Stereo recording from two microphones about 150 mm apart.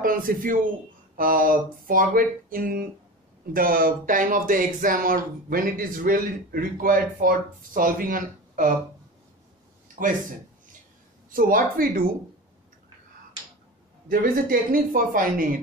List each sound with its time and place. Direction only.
0.0 s speech: 70° right (ahead or behind)
9.9 s a man's voice: 65° right (ahead or behind)
14.0 s speech: 65° right (ahead or behind)